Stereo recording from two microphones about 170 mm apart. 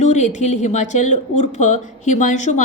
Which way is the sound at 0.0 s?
45° left (ahead or behind).